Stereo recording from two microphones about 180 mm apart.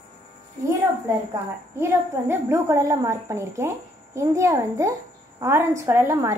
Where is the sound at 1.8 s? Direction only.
15° right (ahead or behind).